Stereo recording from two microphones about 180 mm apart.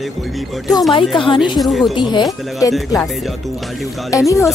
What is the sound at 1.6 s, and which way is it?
Speech, centre (ahead or behind).